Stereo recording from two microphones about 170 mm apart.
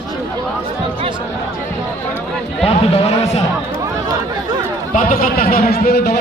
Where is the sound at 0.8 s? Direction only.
30° right (ahead or behind).